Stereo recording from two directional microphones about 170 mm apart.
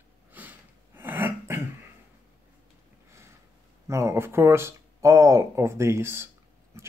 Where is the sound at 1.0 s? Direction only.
10° right (ahead or behind).